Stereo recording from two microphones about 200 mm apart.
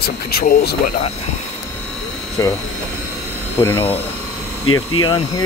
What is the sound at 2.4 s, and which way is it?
Speech, 15° left (ahead or behind).